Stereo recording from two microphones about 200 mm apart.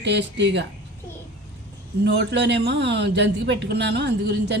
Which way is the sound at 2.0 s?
60° right (ahead or behind).